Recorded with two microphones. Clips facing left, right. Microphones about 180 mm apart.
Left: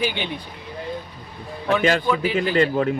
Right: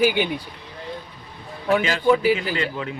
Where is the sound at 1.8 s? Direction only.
50° left (ahead or behind).